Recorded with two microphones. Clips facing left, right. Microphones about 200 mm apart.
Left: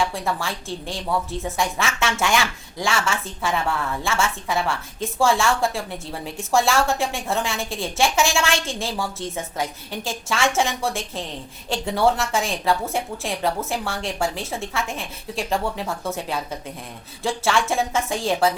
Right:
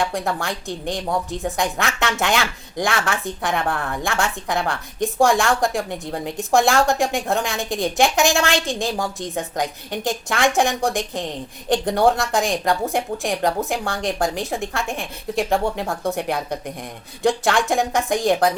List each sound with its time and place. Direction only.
0.4 s a woman's voice: 15° right (ahead or behind)